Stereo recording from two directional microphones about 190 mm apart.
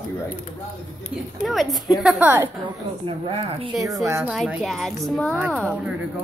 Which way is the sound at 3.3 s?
30° right (ahead or behind).